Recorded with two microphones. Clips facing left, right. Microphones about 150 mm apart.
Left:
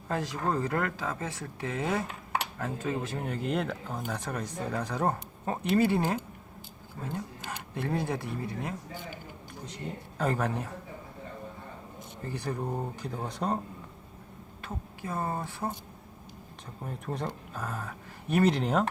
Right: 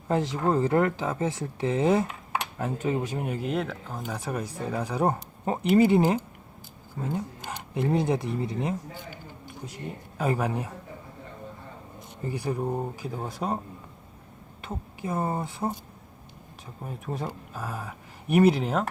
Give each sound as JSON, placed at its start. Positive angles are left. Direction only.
{"t": 0.1, "sound": "speech", "side_deg": -20}
{"t": 10.2, "sound": "speech", "side_deg": -10}
{"t": 12.2, "sound": "speech", "side_deg": -10}
{"t": 14.6, "sound": "speech", "side_deg": -15}
{"t": 16.8, "sound": "speech", "side_deg": -5}